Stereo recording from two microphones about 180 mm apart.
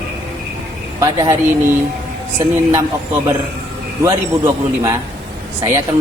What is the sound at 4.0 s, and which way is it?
A man's voice, 15° right (ahead or behind).